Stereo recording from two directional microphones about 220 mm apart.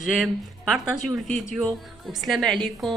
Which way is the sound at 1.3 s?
Centre (ahead or behind).